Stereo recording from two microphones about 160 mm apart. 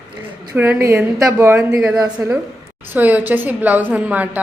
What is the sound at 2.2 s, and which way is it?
A woman's voice, 15° right (ahead or behind).